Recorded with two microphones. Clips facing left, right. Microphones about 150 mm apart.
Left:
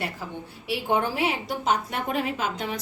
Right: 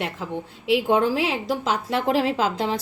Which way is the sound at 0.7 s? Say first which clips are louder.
Right 6 dB; 90° right.